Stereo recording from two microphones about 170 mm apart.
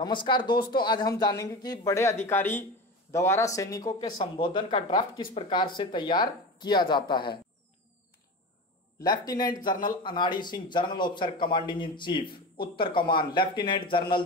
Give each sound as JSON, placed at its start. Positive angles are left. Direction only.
{"t": 0.0, "sound": "speech", "side_deg": 25}
{"t": 9.0, "sound": "speech", "side_deg": 25}